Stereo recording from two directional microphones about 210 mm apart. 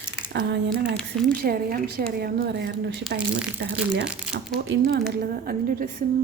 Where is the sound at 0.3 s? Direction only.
55° right (ahead or behind).